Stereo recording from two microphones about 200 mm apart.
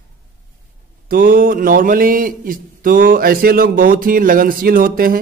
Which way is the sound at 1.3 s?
45° right (ahead or behind).